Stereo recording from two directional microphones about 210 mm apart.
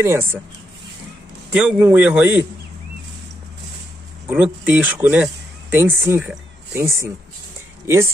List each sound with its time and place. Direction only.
0.0 s a man's voice: 10° right (ahead or behind)
1.5 s a man's voice: 5° right (ahead or behind)
4.3 s speech: 10° right (ahead or behind)